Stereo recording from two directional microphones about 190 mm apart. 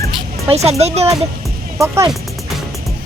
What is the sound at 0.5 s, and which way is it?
Speech, 35° right (ahead or behind).